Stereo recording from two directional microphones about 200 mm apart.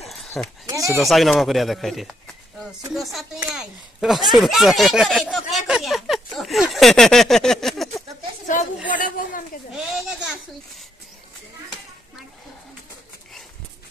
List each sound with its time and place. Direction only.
0.0 s a sound: centre (ahead or behind)
0.7 s speech: 15° right (ahead or behind)
1.0 s speech: centre (ahead or behind)
8.9 s a woman's voice: 40° left (ahead or behind)
9.9 s speech: 5° right (ahead or behind)